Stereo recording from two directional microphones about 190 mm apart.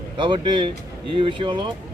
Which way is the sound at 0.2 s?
25° right (ahead or behind).